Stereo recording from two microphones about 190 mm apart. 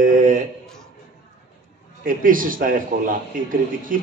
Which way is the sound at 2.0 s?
45° right (ahead or behind).